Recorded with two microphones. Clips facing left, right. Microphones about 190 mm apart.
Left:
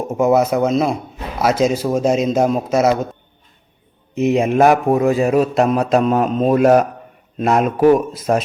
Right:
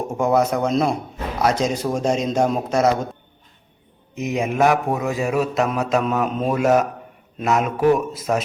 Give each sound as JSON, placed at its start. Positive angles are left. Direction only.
{"t": 0.1, "sound": "speech", "side_deg": 5}
{"t": 4.2, "sound": "a man's voice", "side_deg": 30}
{"t": 6.5, "sound": "a man's voice", "side_deg": 50}
{"t": 7.4, "sound": "a man's voice", "side_deg": 30}